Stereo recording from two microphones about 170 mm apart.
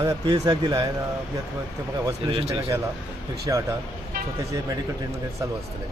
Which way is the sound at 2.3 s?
35° right (ahead or behind).